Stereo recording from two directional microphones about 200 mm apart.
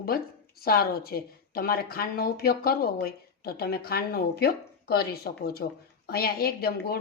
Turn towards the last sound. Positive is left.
turn(degrees=50)  # may be behind; listen again after turning